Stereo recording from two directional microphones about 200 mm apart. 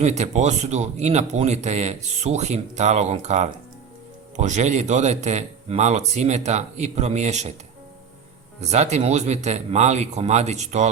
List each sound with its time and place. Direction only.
0.0 s a man's voice: 35° right (ahead or behind)
8.6 s a man's voice: 35° right (ahead or behind)